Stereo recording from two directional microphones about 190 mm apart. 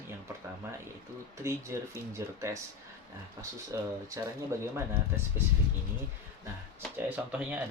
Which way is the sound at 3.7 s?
15° right (ahead or behind).